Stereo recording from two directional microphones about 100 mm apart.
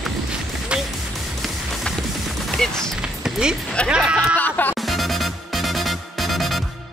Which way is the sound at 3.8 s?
5° right (ahead or behind).